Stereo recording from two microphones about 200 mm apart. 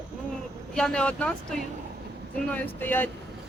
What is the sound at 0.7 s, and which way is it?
Speech, 5° left (ahead or behind).